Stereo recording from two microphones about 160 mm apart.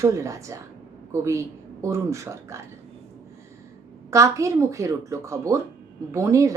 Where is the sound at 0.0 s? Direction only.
20° right (ahead or behind).